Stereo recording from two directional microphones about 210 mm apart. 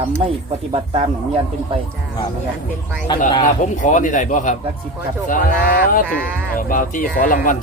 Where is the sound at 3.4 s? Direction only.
40° left (ahead or behind).